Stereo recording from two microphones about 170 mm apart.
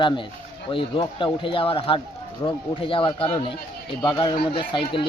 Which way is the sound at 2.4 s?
20° left (ahead or behind).